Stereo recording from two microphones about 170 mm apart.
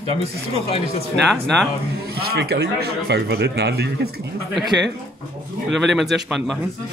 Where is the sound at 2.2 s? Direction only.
65° right (ahead or behind).